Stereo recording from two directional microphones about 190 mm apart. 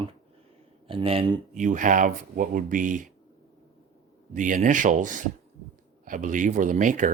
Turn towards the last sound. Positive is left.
turn(degrees=-40)  # may be behind; listen again after turning